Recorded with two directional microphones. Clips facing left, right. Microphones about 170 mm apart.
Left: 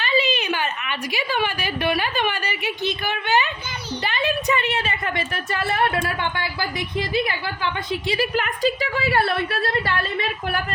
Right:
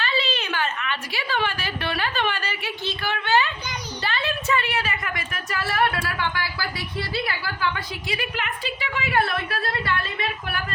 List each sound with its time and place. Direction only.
0.0 s a woman's voice: 15° left (ahead or behind); by 10.6 s 30° left (ahead or behind)